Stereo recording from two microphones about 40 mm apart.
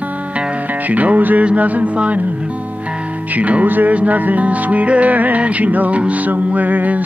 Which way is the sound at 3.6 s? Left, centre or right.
Right.